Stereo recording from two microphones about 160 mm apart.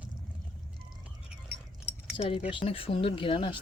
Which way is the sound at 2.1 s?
35° left (ahead or behind).